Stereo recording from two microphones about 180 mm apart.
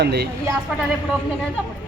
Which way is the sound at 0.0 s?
65° right (ahead or behind).